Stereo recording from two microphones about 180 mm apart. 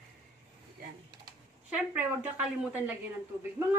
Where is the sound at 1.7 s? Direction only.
10° right (ahead or behind).